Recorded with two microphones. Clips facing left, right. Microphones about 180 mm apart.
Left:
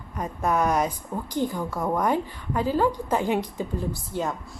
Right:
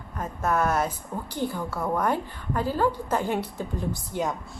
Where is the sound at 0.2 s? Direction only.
15° left (ahead or behind).